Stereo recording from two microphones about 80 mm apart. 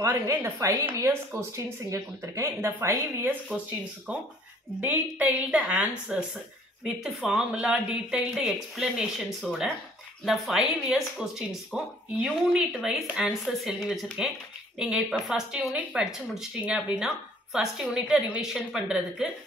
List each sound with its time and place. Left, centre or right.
0.3 s speech: right
3.5 s a woman's voice: centre